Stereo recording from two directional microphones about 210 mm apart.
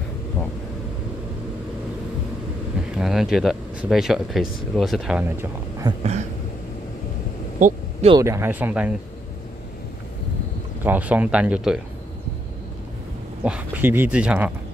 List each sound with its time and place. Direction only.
3.0 s speech: centre (ahead or behind)
7.5 s a sound: 35° right (ahead or behind)
8.1 s speech: 15° right (ahead or behind)
10.8 s speech: 10° right (ahead or behind)
13.4 s speech: 5° right (ahead or behind)